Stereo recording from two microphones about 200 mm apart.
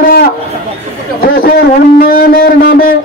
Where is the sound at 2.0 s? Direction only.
45° left (ahead or behind).